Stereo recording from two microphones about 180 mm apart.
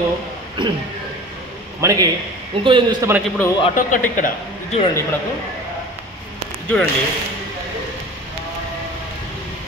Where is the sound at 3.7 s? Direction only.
45° left (ahead or behind).